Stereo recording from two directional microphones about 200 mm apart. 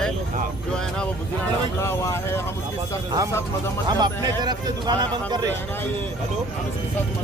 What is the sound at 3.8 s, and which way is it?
Speech, 20° right (ahead or behind).